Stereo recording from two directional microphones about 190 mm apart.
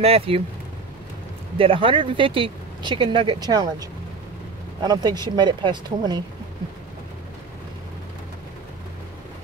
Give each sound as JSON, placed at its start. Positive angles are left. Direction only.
{"t": 0.0, "sound": "speech", "side_deg": -30}
{"t": 1.6, "sound": "speech", "side_deg": -30}
{"t": 4.8, "sound": "speech", "side_deg": -20}